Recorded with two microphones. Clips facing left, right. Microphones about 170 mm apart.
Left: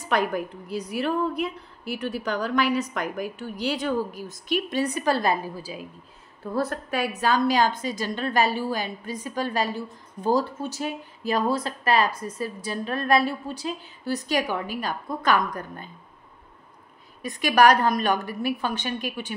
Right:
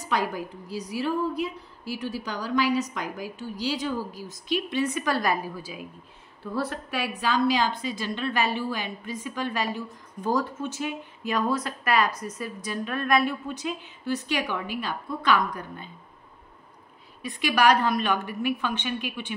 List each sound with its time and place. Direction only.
0.0 s a woman's voice: 55° left (ahead or behind); by 5.8 s 30° left (ahead or behind)
6.4 s a woman's voice: 45° left (ahead or behind)
17.2 s a woman's voice: 45° left (ahead or behind)